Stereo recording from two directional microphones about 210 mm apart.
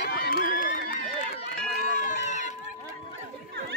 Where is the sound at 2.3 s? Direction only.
35° left (ahead or behind).